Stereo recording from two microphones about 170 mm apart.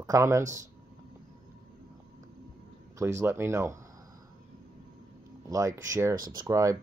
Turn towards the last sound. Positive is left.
turn(degrees=-20)  # may be behind; listen again after turning